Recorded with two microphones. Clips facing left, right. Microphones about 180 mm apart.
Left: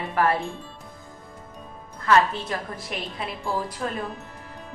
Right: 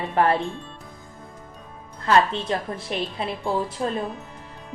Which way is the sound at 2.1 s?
30° right (ahead or behind).